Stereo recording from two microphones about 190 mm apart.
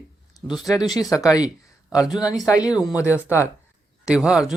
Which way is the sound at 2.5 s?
20° left (ahead or behind).